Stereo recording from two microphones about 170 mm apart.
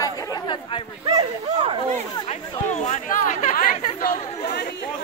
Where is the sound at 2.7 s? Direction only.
45° left (ahead or behind).